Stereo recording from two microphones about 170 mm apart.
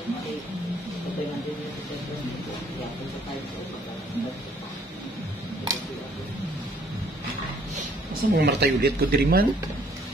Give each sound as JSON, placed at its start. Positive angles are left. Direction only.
{"t": 8.1, "sound": "speech", "side_deg": -75}